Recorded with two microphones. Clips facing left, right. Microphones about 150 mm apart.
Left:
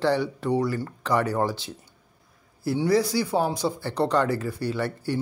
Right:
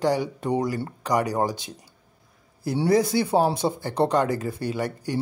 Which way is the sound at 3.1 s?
20° right (ahead or behind).